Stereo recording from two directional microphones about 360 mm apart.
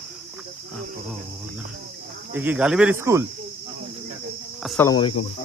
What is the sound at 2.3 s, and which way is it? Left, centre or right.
Speech, centre.